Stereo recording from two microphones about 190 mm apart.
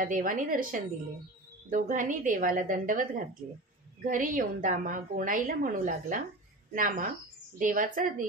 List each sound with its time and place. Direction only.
0.0 s a woman's voice: 45° right (ahead or behind)